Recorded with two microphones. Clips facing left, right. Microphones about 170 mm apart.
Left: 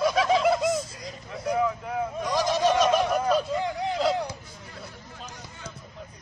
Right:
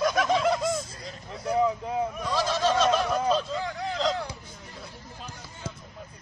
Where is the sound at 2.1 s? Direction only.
15° left (ahead or behind).